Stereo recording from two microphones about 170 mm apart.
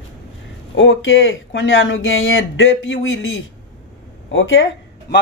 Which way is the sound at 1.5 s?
90° left.